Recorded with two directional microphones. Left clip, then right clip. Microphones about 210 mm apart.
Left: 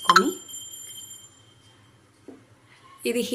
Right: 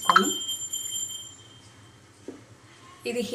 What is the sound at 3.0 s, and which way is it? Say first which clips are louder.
Speech: left 4 dB; 50° left (ahead or behind).